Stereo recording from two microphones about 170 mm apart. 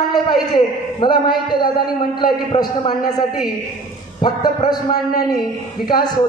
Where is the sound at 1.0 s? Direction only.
25° left (ahead or behind).